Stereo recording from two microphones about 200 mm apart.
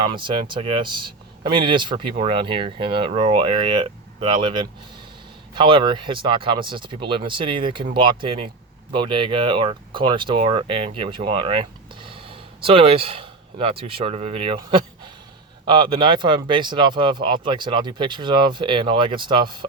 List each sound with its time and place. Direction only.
0.0 s speech: 25° right (ahead or behind)